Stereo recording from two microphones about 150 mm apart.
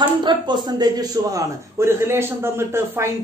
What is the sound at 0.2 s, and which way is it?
A man's voice, 30° right (ahead or behind).